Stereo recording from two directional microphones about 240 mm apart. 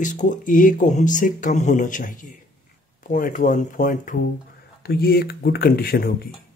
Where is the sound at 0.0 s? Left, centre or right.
Left.